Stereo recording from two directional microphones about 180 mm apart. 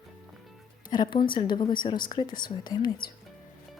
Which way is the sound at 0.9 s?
25° left (ahead or behind).